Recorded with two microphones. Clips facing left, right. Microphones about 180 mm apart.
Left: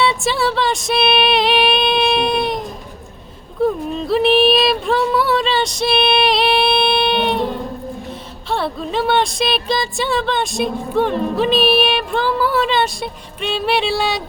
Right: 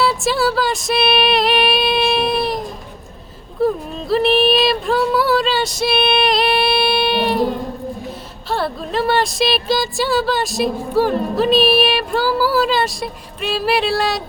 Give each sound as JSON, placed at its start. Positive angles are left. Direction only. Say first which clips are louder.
{"t": 0.0, "sound": "music", "louder": "right 1 dB", "side_deg": 0}
{"t": 3.6, "sound": "female singing", "louder": "left 1 dB", "side_deg": 0}
{"t": 8.4, "sound": "speech", "louder": "even", "side_deg": 0}